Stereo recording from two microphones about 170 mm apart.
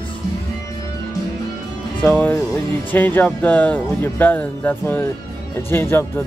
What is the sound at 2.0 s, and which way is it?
Speech, 10° left (ahead or behind).